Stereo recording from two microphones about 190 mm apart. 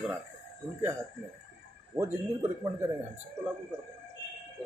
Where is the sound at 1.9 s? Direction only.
15° right (ahead or behind).